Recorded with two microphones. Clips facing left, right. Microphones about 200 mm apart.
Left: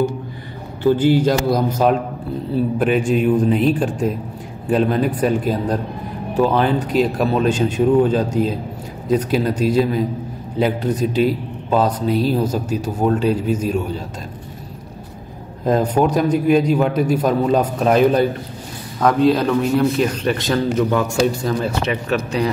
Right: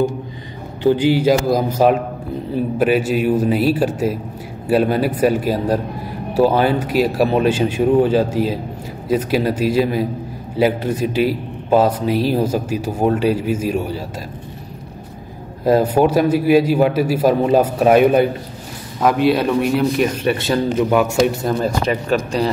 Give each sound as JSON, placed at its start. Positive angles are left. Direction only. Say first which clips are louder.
{"t": 0.8, "sound": "a man's voice", "louder": "right 1 dB", "side_deg": -10}
{"t": 15.6, "sound": "a man's voice", "louder": "right 3 dB", "side_deg": -10}
{"t": 19.3, "sound": "a man's voice", "louder": "even", "side_deg": -10}
{"t": 21.5, "sound": "speech", "louder": "right 2 dB", "side_deg": -35}